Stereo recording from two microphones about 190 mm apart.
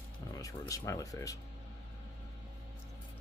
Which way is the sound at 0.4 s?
15° left (ahead or behind).